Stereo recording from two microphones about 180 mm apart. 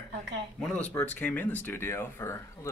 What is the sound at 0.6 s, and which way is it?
Speech, 5° left (ahead or behind).